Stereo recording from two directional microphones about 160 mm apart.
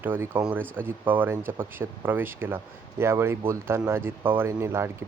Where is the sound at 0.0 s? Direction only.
10° right (ahead or behind).